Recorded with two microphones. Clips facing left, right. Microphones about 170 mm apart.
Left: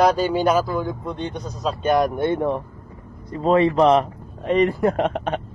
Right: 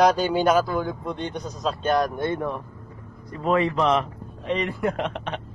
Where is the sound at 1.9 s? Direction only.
20° left (ahead or behind).